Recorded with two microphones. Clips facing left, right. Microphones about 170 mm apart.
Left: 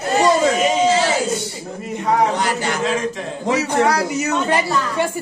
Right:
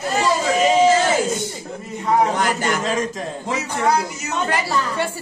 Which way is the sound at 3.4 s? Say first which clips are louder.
Left 5 dB; 75° left (ahead or behind).